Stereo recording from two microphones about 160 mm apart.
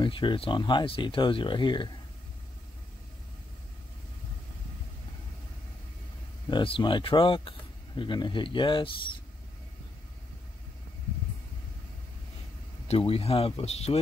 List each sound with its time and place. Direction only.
0.0 s speech: 30° left (ahead or behind)
6.5 s speech: 30° left (ahead or behind)
12.8 s speech: 35° left (ahead or behind)